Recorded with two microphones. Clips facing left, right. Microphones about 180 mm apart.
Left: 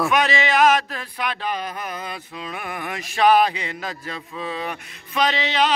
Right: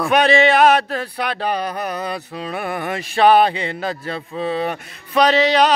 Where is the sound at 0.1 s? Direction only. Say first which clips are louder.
Right 6 dB; 30° right (ahead or behind).